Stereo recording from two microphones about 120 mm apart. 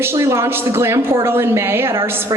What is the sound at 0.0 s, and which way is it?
A woman's voice, 20° right (ahead or behind).